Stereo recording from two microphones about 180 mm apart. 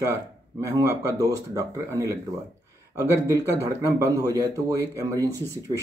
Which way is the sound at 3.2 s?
20° right (ahead or behind).